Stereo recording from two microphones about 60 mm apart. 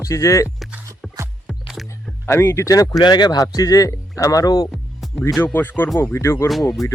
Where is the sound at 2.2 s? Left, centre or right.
Left.